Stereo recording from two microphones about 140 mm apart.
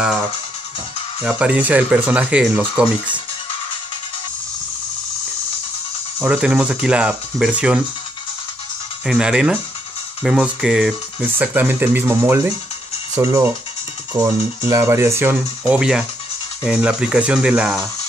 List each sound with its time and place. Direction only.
1.2 s speech: 10° right (ahead or behind)
6.1 s speech: 10° right (ahead or behind)
9.0 s speech: 5° right (ahead or behind)